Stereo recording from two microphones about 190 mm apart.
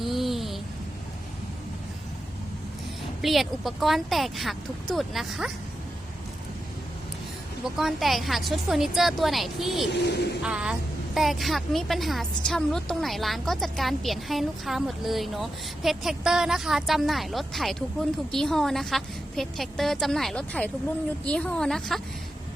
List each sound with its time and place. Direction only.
0.0 s a sound: centre (ahead or behind)
3.2 s a woman's voice: centre (ahead or behind)
7.8 s a woman's voice: centre (ahead or behind)
9.9 s speech: 60° left (ahead or behind)
10.4 s a woman's voice: 5° right (ahead or behind)